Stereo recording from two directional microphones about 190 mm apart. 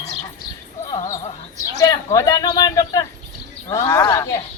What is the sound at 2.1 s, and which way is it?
A woman's voice, 20° left (ahead or behind).